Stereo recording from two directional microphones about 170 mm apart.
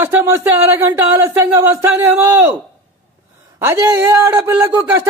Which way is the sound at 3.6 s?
20° right (ahead or behind).